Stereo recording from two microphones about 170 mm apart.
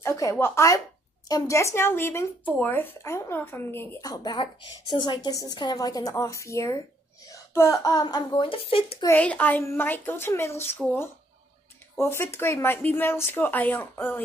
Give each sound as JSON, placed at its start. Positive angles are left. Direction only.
{"t": 0.0, "sound": "a woman's voice", "side_deg": 20}
{"t": 9.0, "sound": "speech", "side_deg": 10}
{"t": 12.0, "sound": "speech", "side_deg": 15}